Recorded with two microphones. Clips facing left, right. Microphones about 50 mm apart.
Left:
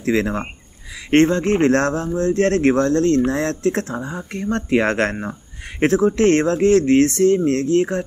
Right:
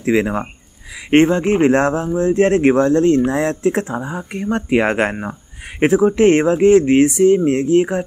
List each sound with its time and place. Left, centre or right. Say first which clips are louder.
0.0 s speech: right 3 dB; centre